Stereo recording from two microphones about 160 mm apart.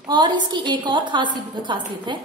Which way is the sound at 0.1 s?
25° right (ahead or behind).